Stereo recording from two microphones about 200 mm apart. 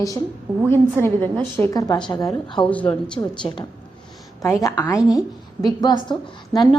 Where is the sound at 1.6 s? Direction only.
20° left (ahead or behind).